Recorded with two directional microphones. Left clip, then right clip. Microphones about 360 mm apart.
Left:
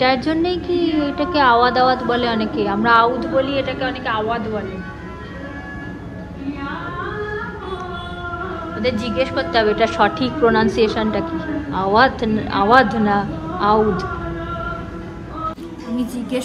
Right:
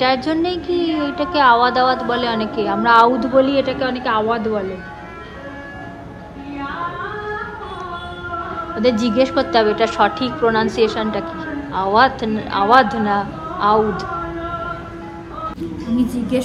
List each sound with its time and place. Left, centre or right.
0.0 s a woman's voice: centre
8.8 s a woman's voice: centre
16.0 s speech: centre